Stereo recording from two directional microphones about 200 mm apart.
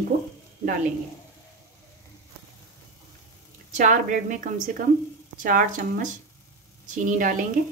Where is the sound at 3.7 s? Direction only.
40° right (ahead or behind).